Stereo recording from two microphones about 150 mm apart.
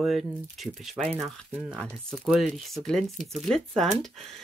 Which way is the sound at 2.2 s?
5° right (ahead or behind).